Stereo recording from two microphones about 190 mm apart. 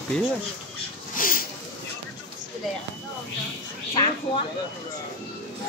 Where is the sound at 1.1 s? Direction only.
50° left (ahead or behind).